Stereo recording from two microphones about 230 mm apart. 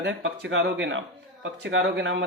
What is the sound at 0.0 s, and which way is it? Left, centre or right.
Speech, right.